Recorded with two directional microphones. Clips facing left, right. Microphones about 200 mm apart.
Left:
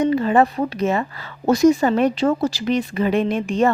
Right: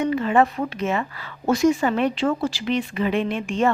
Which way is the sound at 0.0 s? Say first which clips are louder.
Left 3 dB; 35° left (ahead or behind).